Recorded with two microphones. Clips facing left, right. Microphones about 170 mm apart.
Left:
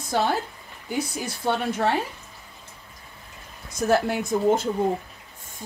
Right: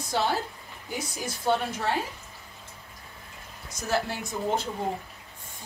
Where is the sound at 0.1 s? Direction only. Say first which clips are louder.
Left 3 dB; 50° left (ahead or behind).